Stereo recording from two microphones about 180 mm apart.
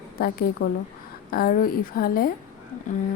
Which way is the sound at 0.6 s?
55° left (ahead or behind).